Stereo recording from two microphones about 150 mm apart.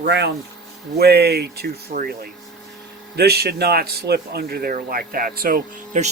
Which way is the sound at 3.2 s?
90° right.